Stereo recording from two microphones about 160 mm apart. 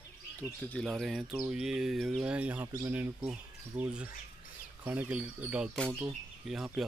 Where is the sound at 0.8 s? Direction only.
Centre (ahead or behind).